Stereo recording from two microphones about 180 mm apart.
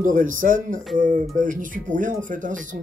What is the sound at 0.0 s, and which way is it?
Speech, 45° right (ahead or behind).